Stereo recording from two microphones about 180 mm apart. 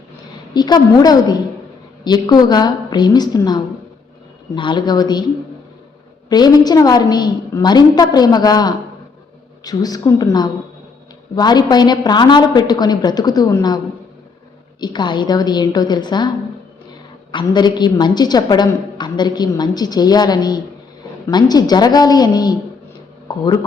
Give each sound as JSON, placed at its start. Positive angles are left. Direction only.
{"t": 0.5, "sound": "a woman's voice", "side_deg": 25}
{"t": 6.2, "sound": "a woman's voice", "side_deg": 20}
{"t": 14.8, "sound": "a woman's voice", "side_deg": 25}
{"t": 17.3, "sound": "a woman's voice", "side_deg": 25}